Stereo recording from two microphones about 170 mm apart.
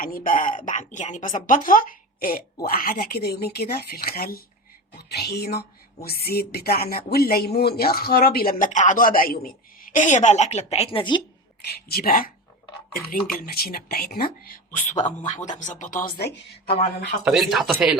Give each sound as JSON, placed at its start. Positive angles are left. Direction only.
{"t": 0.0, "sound": "speech", "side_deg": 55}
{"t": 4.9, "sound": "speech", "side_deg": 70}
{"t": 11.6, "sound": "speech", "side_deg": 70}
{"t": 17.2, "sound": "speech", "side_deg": 0}